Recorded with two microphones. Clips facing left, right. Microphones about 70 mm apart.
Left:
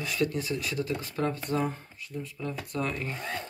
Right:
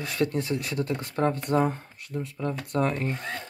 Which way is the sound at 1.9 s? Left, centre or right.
Right.